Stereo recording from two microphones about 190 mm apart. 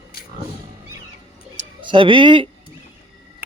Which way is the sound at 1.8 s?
25° right (ahead or behind).